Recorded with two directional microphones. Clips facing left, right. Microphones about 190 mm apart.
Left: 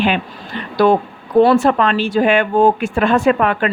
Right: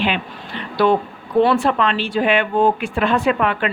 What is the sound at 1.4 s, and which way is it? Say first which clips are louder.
Speech: left 4 dB; 45° left (ahead or behind).